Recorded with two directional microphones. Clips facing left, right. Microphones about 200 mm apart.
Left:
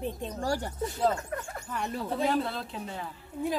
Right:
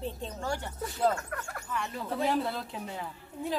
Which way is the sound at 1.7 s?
45° left (ahead or behind).